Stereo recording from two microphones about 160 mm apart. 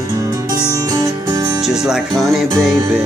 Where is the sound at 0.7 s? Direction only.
25° right (ahead or behind).